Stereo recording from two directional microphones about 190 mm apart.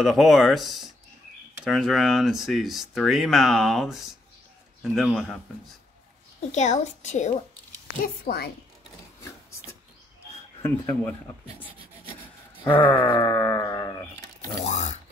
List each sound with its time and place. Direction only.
0.0 s speech: centre (ahead or behind)
6.5 s a woman's voice: 35° left (ahead or behind)
8.0 s a woman's voice: 55° left (ahead or behind)
10.6 s speech: 10° left (ahead or behind)
12.6 s speech: 10° left (ahead or behind)
14.6 s a woman's voice: 35° left (ahead or behind)